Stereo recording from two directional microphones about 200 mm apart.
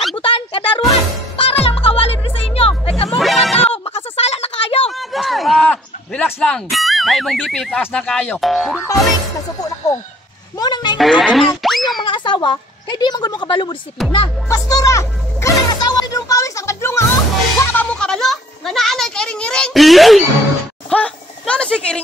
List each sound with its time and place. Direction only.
0.1 s music: 25° left (ahead or behind)
3.1 s music: centre (ahead or behind)
3.7 s a sound: 30° left (ahead or behind)
4.9 s speech: centre (ahead or behind)
10.6 s a sound: 20° left (ahead or behind)
11.0 s boing: centre (ahead or behind)
12.0 s a woman's voice: 25° left (ahead or behind)
14.1 s music: 20° left (ahead or behind)
17.6 s a sound: 5° left (ahead or behind)
20.9 s speech: 5° left (ahead or behind)